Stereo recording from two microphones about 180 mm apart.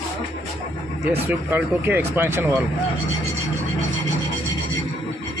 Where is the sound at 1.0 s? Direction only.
10° right (ahead or behind).